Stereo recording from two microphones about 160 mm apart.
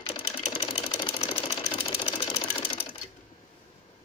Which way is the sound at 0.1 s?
35° left (ahead or behind).